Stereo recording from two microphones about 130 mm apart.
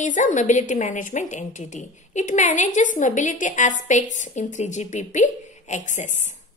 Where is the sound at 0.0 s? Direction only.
70° left (ahead or behind).